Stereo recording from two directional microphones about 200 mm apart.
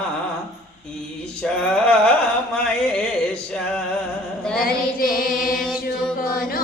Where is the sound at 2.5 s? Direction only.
5° left (ahead or behind).